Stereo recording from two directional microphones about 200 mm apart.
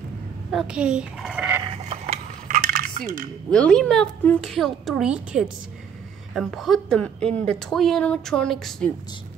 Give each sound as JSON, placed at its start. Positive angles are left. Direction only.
{"t": 0.5, "sound": "a woman's voice", "side_deg": -5}
{"t": 1.9, "sound": "a sound", "side_deg": -35}
{"t": 3.4, "sound": "a woman's voice", "side_deg": 5}